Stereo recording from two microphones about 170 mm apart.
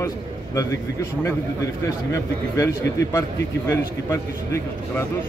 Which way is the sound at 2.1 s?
15° left (ahead or behind).